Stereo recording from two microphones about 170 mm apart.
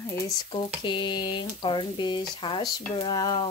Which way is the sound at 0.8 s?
30° left (ahead or behind).